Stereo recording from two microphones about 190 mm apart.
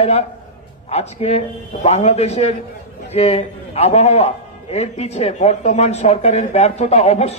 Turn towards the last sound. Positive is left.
turn(degrees=35)  # may be behind; listen again after turning